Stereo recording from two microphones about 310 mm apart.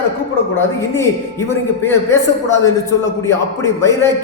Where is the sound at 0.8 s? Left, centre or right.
Centre.